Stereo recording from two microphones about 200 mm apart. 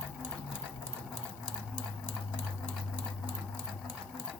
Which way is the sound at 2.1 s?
5° right (ahead or behind).